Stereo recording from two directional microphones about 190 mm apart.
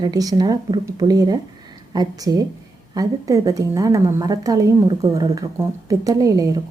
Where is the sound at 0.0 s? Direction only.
20° right (ahead or behind).